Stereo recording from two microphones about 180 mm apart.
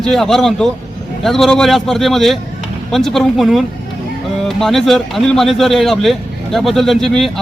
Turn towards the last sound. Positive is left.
turn(degrees=0)  # may be behind; listen again after turning